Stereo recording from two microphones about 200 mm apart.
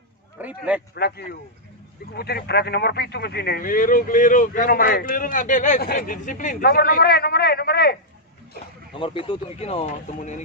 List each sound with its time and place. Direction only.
0.4 s a man's voice: 5° right (ahead or behind)
0.9 s speech: 50° left (ahead or behind)
8.9 s speech: 25° left (ahead or behind)